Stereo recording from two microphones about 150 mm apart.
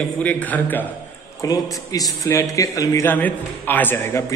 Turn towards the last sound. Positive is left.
turn(degrees=20)  # may be behind; listen again after turning